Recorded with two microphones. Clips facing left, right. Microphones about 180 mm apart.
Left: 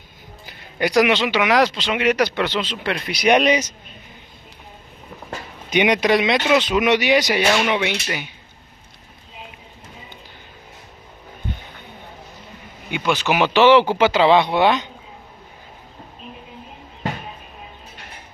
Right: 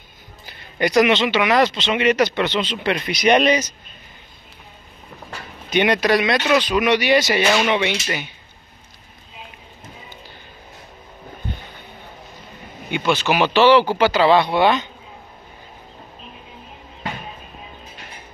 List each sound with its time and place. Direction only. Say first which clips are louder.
0.5 s speech: right 1 dB; 5° left (ahead or behind)
5.7 s speech: even; 15° left (ahead or behind)
6.3 s speech: even; 10° left (ahead or behind)
13.0 s speech: even; 15° left (ahead or behind)